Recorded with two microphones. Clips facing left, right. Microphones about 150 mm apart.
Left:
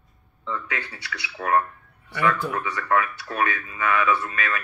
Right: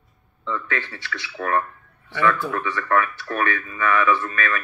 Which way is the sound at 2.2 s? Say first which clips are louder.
Right 2 dB; 15° left (ahead or behind).